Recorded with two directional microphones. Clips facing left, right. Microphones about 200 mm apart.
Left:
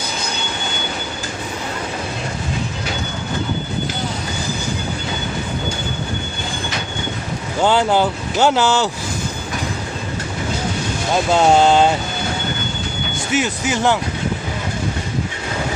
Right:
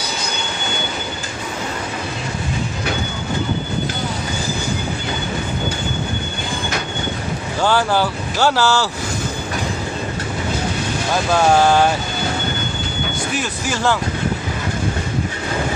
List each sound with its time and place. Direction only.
7.6 s speech: 20° left (ahead or behind)
11.1 s speech: 20° left (ahead or behind)
13.4 s speech: 20° left (ahead or behind)